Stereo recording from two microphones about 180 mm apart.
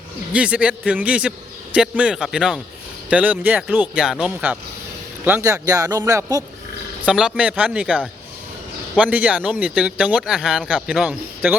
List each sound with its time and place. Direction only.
0.3 s speech: 5° right (ahead or behind)
7.0 s speech: 5° right (ahead or behind)
9.0 s speech: 10° right (ahead or behind)